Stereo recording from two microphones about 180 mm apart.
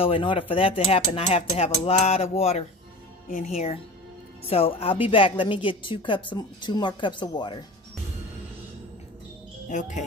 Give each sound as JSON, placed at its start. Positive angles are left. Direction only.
{"t": 0.0, "sound": "a woman's voice", "side_deg": 30}
{"t": 9.7, "sound": "speech", "side_deg": 40}